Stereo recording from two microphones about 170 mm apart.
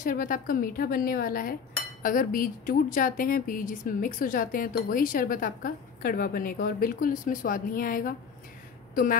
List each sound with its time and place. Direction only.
0.0 s a woman's voice: 55° left (ahead or behind)